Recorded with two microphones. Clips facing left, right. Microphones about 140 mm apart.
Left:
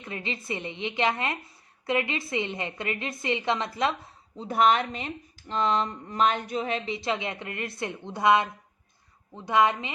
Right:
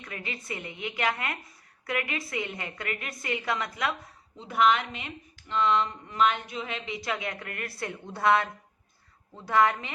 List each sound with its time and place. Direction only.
0.0 s speech: 25° left (ahead or behind)